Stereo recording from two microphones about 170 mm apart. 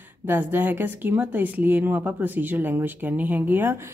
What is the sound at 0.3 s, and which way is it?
Speech, 10° right (ahead or behind).